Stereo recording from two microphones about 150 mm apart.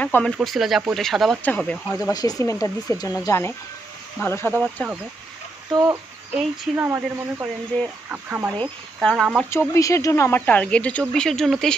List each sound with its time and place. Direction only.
0.0 s speech: 5° left (ahead or behind)
2.0 s speech: 25° left (ahead or behind)
5.7 s speech: 25° right (ahead or behind)
9.0 s speech: centre (ahead or behind)
9.5 s speech: 20° left (ahead or behind); by 11.7 s 5° left (ahead or behind)